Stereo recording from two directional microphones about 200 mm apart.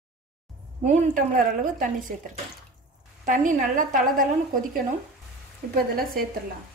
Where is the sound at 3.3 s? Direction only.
40° right (ahead or behind).